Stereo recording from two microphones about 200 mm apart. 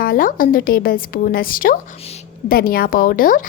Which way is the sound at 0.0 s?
45° left (ahead or behind).